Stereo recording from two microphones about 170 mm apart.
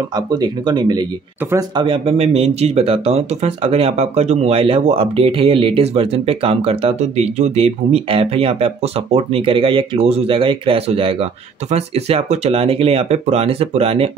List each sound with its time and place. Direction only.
0.1 s speech: 25° right (ahead or behind)